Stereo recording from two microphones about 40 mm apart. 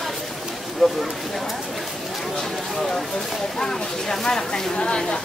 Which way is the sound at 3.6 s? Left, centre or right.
Centre.